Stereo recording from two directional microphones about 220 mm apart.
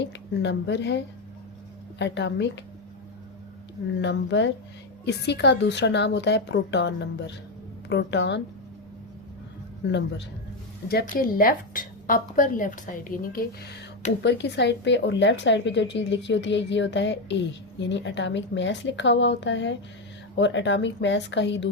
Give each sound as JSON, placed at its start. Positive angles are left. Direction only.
{"t": 0.0, "sound": "a woman's voice", "side_deg": 55}
{"t": 4.0, "sound": "a woman's voice", "side_deg": 55}
{"t": 9.8, "sound": "a woman's voice", "side_deg": 55}
{"t": 10.8, "sound": "a woman's voice", "side_deg": 40}
{"t": 14.2, "sound": "a woman's voice", "side_deg": 50}